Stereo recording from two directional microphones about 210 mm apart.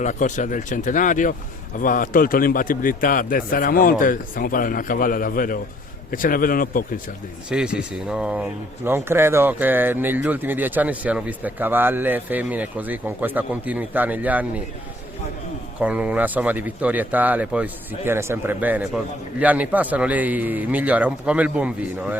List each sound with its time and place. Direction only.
0.0 s a man's voice: 35° left (ahead or behind)
7.5 s speech: 5° right (ahead or behind)
15.8 s speech: 5° right (ahead or behind)